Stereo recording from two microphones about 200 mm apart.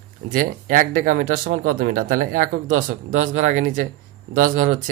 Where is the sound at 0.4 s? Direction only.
45° right (ahead or behind).